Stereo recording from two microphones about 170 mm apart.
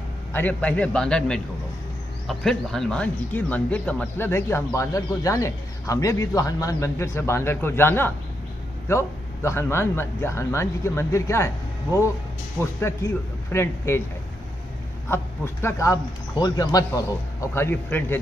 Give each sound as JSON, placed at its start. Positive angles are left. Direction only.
{"t": 0.3, "sound": "speech", "side_deg": 10}
{"t": 12.5, "sound": "speech", "side_deg": 15}
{"t": 15.0, "sound": "speech", "side_deg": 15}